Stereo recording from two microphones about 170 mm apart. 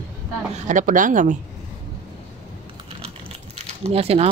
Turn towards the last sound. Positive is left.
turn(degrees=-35)  # may be behind; listen again after turning